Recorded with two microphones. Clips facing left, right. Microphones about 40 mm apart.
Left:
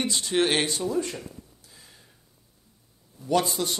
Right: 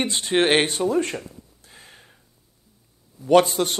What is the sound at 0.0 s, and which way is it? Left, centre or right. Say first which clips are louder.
A man's voice: right 4 dB; right.